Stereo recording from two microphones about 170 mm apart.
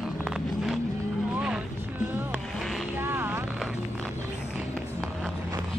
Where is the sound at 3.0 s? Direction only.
15° right (ahead or behind).